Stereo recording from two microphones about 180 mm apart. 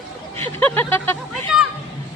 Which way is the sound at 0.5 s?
10° left (ahead or behind).